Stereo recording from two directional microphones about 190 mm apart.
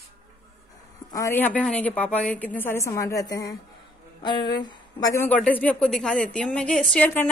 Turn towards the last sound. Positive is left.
turn(degrees=10)  # may be behind; listen again after turning